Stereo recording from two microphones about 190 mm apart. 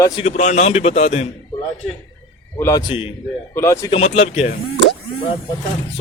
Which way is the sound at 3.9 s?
35° left (ahead or behind).